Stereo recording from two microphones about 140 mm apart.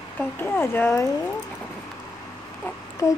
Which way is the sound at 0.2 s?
15° left (ahead or behind).